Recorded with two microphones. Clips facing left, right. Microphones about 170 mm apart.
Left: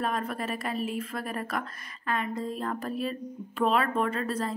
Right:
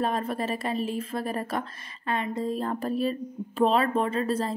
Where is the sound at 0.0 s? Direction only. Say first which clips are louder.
Right 3 dB; 30° right (ahead or behind).